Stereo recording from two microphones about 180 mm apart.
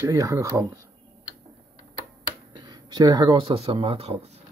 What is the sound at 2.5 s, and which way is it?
Speech, 25° right (ahead or behind).